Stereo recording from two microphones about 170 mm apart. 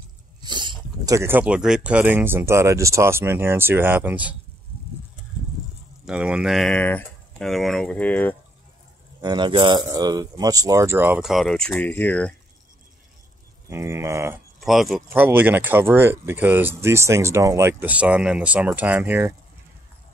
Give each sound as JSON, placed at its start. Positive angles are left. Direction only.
{"t": 0.4, "sound": "speech", "side_deg": -25}
{"t": 6.0, "sound": "speech", "side_deg": -5}
{"t": 9.2, "sound": "speech", "side_deg": -25}
{"t": 13.7, "sound": "speech", "side_deg": -15}
{"t": 14.6, "sound": "speech", "side_deg": 0}